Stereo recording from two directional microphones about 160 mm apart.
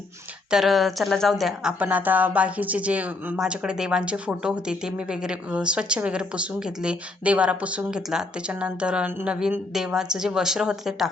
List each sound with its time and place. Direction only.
0.5 s speech: centre (ahead or behind)